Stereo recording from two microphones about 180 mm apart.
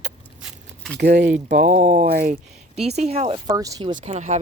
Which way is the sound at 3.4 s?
20° right (ahead or behind).